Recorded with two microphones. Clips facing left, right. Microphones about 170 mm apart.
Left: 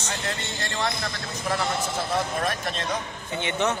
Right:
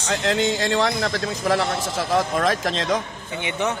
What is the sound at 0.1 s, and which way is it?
A man's voice, 90° right.